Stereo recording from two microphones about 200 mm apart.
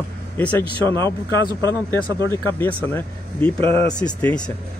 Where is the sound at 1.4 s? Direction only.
20° right (ahead or behind).